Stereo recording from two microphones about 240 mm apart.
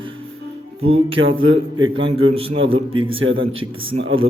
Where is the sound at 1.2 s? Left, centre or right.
Right.